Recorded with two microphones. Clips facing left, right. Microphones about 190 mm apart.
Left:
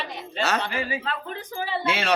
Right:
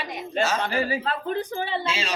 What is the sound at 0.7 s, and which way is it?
Speech, 35° right (ahead or behind).